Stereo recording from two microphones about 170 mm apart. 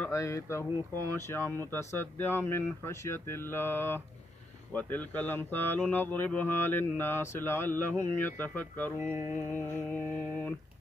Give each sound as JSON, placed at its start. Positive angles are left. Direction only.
{"t": 0.1, "sound": "speech", "side_deg": 15}